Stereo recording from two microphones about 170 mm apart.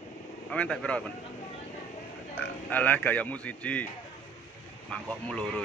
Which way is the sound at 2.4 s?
10° left (ahead or behind).